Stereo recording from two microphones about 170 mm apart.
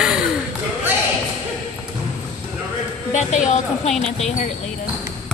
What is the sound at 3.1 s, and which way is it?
A woman's voice, 45° left (ahead or behind).